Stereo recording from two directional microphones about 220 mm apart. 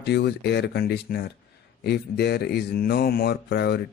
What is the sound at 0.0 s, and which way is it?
A man's voice, 50° left (ahead or behind).